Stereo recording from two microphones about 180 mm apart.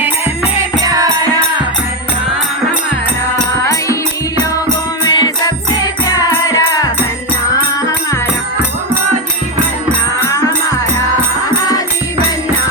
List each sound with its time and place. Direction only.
5.0 s music: 25° left (ahead or behind)
10.2 s music: 20° left (ahead or behind)